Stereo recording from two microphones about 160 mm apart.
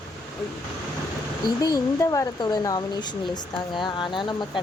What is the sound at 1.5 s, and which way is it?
Speech, 20° left (ahead or behind).